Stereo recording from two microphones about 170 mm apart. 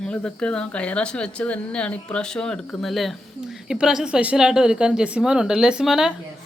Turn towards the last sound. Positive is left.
turn(degrees=-5)  # may be behind; listen again after turning